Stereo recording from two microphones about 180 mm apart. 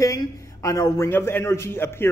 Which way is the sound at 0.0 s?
20° left (ahead or behind).